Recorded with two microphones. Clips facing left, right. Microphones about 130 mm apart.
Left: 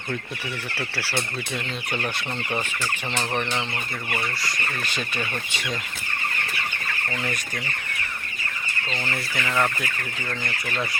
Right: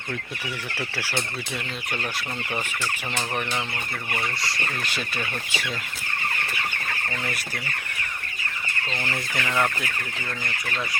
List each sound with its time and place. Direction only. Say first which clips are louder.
0.8 s chicken: even; 15° right (ahead or behind)
2.5 s chicken: left 2 dB; 15° left (ahead or behind)
4.9 s chicken: left 1 dB; 5° right (ahead or behind)
9.0 s chicken: even; 15° right (ahead or behind)